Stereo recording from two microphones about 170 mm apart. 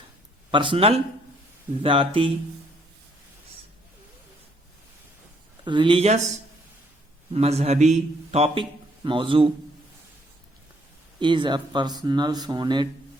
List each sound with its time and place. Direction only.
0.5 s a man's voice: 30° right (ahead or behind)
5.6 s a man's voice: 30° right (ahead or behind)
7.3 s a man's voice: 40° right (ahead or behind)
11.2 s speech: 30° right (ahead or behind)